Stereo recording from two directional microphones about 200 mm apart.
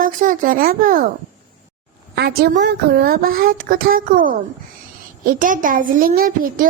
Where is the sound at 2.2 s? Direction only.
55° right (ahead or behind).